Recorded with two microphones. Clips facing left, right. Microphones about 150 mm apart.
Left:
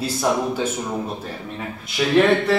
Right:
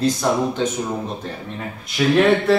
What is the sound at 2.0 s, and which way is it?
Speech, centre (ahead or behind).